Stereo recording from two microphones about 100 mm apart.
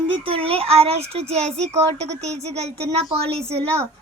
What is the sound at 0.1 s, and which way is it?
A child's voice, 65° right (ahead or behind).